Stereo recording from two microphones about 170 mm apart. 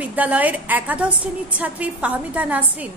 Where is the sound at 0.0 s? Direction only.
10° right (ahead or behind).